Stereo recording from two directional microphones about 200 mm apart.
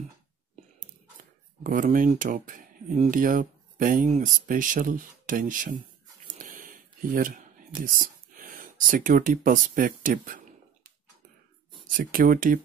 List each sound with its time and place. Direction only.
1.6 s speech: 45° right (ahead or behind)
6.3 s a sound: 40° right (ahead or behind)
12.0 s speech: 45° right (ahead or behind)